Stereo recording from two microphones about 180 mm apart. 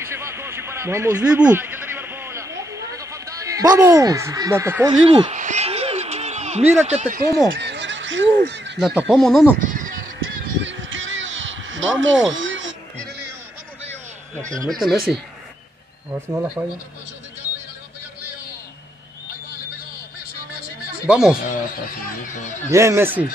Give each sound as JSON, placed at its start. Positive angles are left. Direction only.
{"t": 0.0, "sound": "a sound", "side_deg": -15}
{"t": 5.0, "sound": "speech", "side_deg": -30}
{"t": 5.3, "sound": "a sound", "side_deg": -40}
{"t": 7.5, "sound": "fowl", "side_deg": -80}
{"t": 8.7, "sound": "speech", "side_deg": 0}
{"t": 9.6, "sound": "bleat", "side_deg": -45}
{"t": 10.6, "sound": "a sound", "side_deg": -90}
{"t": 14.8, "sound": "speech", "side_deg": 0}
{"t": 16.1, "sound": "speech", "side_deg": -10}
{"t": 21.1, "sound": "speech", "side_deg": -5}
{"t": 21.4, "sound": "speech", "side_deg": 50}
{"t": 22.7, "sound": "speech", "side_deg": -15}